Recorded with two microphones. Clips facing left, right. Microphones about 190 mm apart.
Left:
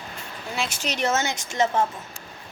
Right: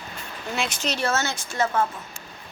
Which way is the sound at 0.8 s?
20° left (ahead or behind).